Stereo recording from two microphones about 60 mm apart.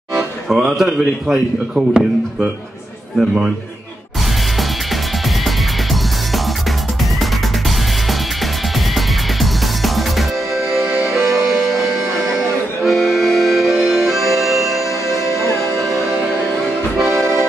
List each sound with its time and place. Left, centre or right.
0.5 s speech: centre
8.9 s music: centre
12.8 s accordion: centre
14.0 s music: centre
17.0 s accordion: right